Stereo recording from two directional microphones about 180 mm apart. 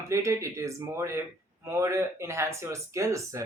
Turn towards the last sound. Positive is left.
turn(degrees=-15)  # may be behind; listen again after turning